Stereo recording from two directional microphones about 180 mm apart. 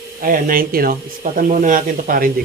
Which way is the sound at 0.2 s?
50° right (ahead or behind).